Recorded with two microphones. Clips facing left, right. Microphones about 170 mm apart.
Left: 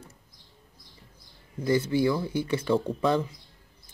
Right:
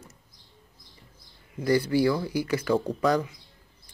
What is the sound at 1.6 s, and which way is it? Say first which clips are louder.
Speech: right 1 dB; 20° left (ahead or behind).